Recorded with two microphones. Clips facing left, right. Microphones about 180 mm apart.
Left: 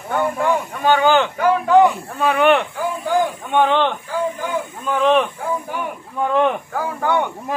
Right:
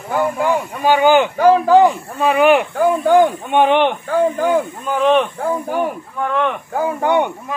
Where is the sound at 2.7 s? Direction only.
55° right (ahead or behind).